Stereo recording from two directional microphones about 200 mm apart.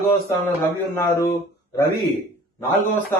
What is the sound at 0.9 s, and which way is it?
Speech, 15° left (ahead or behind).